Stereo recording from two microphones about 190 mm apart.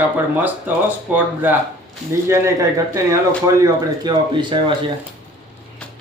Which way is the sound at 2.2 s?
15° right (ahead or behind).